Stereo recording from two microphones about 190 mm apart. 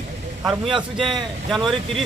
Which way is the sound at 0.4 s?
5° right (ahead or behind).